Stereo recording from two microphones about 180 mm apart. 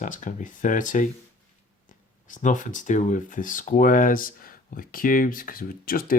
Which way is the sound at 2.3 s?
45° left (ahead or behind).